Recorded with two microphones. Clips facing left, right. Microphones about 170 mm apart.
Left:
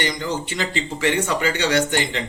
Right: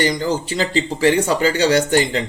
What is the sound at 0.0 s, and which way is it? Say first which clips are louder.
Speech: right 6 dB; 35° right (ahead or behind).